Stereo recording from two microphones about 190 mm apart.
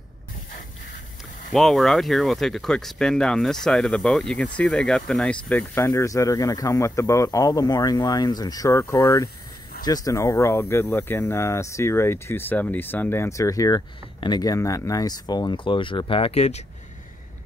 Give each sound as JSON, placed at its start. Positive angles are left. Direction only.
{"t": 1.5, "sound": "speech", "side_deg": 0}